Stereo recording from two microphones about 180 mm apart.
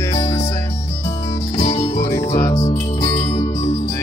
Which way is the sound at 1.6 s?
35° left (ahead or behind).